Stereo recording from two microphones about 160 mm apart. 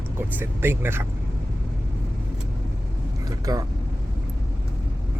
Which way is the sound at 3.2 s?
25° right (ahead or behind).